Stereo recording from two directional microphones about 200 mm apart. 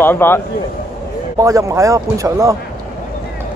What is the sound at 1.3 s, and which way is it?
A man's voice, 15° right (ahead or behind).